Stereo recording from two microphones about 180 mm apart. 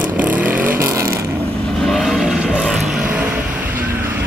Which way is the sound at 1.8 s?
Centre (ahead or behind).